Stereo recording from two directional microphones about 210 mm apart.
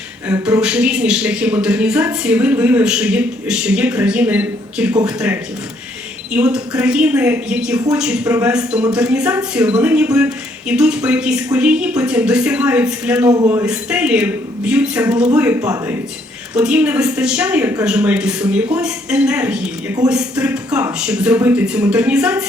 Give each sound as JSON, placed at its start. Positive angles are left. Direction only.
{"t": 0.3, "sound": "speech", "side_deg": -10}
{"t": 13.2, "sound": "speech", "side_deg": -15}
{"t": 13.7, "sound": "speech", "side_deg": -5}